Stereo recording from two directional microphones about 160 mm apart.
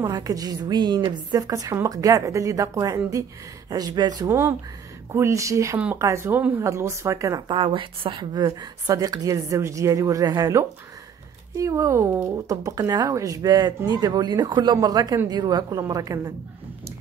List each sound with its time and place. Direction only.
0.0 s speech: 20° right (ahead or behind)